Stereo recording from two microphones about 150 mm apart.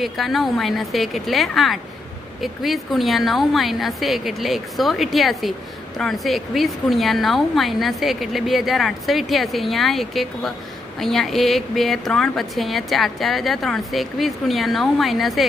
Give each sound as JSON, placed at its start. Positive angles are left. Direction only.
{"t": 0.0, "sound": "a woman's voice", "side_deg": 0}